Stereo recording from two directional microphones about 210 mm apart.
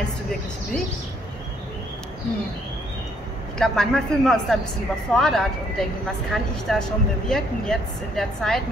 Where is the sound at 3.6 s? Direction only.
Centre (ahead or behind).